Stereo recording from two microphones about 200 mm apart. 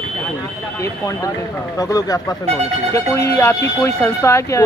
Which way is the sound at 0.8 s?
15° left (ahead or behind).